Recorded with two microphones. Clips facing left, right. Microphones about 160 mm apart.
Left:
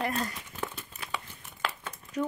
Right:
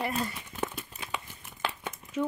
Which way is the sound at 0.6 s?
15° right (ahead or behind).